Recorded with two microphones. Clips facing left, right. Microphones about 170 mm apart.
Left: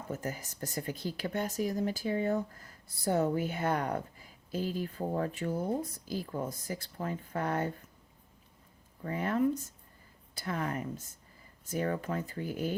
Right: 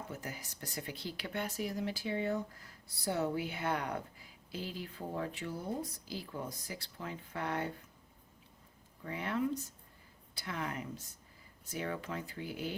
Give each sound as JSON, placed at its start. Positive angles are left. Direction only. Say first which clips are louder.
{"t": 0.1, "sound": "a woman's voice", "louder": "left 7 dB", "side_deg": 45}
{"t": 9.0, "sound": "a woman's voice", "louder": "left 6 dB", "side_deg": 45}